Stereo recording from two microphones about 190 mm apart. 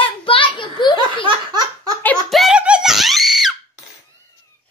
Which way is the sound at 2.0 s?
5° left (ahead or behind).